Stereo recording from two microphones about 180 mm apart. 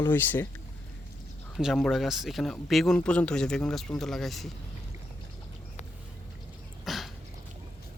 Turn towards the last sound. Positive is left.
turn(degrees=0)  # may be behind; listen again after turning